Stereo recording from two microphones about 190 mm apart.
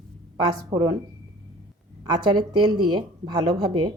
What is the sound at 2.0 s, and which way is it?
A woman's voice, 25° right (ahead or behind).